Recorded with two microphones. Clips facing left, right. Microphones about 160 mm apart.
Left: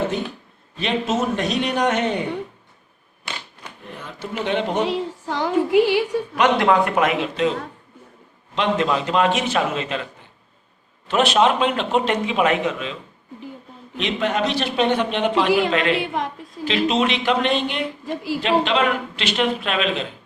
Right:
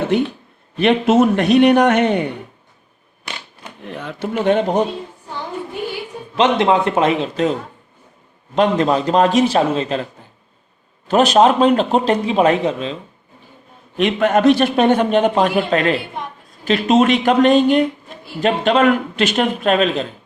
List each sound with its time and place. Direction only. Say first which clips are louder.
0.8 s a man's voice: right 9 dB; 60° right (ahead or behind)
3.9 s speech: right 8 dB; 70° right (ahead or behind)
4.4 s a man's voice: right 7 dB; 45° right (ahead or behind)
4.9 s a woman's voice: left 5 dB; 90° left
6.3 s a man's voice: right 3 dB; 25° right (ahead or behind)
8.5 s speech: right 5 dB; 40° right (ahead or behind)
11.1 s speech: right 5 dB; 40° right (ahead or behind)
13.9 s a man's voice: right 7 dB; 50° right (ahead or behind)
16.0 s a woman's voice: left 4 dB; 90° left
16.6 s a man's voice: right 6 dB; 45° right (ahead or behind)
18.0 s a woman's voice: left 12 dB; 90° left
18.3 s a man's voice: right 5 dB; 45° right (ahead or behind)